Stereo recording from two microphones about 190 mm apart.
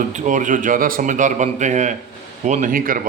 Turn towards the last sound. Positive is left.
turn(degrees=-45)  # may be behind; listen again after turning